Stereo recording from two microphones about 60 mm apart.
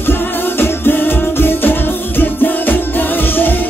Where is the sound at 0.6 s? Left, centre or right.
Left.